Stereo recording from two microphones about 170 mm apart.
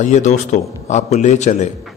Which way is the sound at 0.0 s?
45° left (ahead or behind).